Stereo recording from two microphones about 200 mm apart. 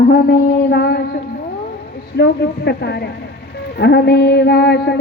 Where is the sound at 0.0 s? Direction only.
50° left (ahead or behind).